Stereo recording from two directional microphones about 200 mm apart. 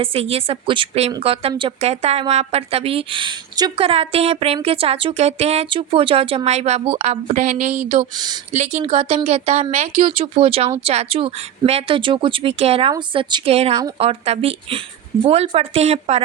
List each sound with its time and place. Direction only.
0.0 s a woman's voice: 30° right (ahead or behind)
8.1 s a woman's voice: 20° right (ahead or behind)
8.5 s a woman's voice: 35° right (ahead or behind)